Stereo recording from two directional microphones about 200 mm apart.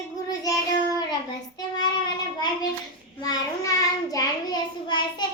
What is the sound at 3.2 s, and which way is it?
Child singing, 20° left (ahead or behind).